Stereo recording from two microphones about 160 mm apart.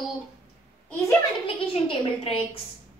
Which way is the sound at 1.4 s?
35° left (ahead or behind).